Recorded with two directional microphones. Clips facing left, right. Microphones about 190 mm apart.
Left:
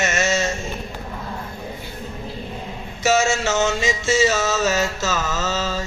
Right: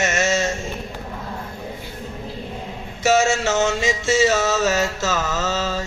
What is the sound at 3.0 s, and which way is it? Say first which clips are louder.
Music: right 1 dB; 55° right (ahead or behind).